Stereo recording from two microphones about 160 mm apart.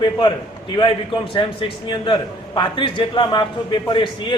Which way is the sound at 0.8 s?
30° left (ahead or behind).